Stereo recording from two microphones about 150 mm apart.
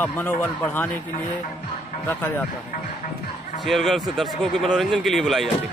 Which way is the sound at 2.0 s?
15° left (ahead or behind).